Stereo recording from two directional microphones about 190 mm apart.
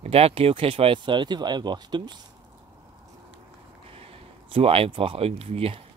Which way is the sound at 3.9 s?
30° right (ahead or behind).